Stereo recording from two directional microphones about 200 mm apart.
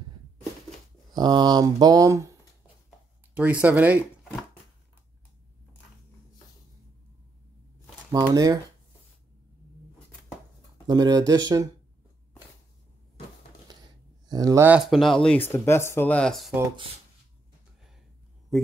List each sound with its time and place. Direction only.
1.1 s speech: 20° right (ahead or behind)
3.3 s speech: 5° right (ahead or behind)
8.1 s speech: 15° right (ahead or behind)
10.9 s speech: 20° right (ahead or behind)
14.2 s speech: 20° right (ahead or behind); by 15.3 s centre (ahead or behind)
15.4 s speech: 10° left (ahead or behind)